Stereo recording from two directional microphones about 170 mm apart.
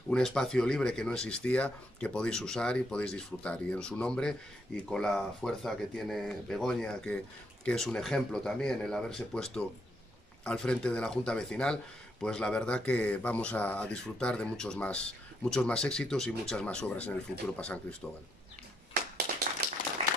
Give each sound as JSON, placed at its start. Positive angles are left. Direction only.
{"t": 0.1, "sound": "speech", "side_deg": 5}
{"t": 19.6, "sound": "clapping", "side_deg": -70}
{"t": 20.0, "sound": "applause", "side_deg": -35}